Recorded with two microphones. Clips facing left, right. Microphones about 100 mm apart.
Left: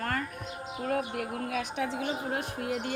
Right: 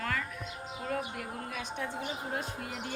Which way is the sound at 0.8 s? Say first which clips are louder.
Left 5 dB; 50° left (ahead or behind).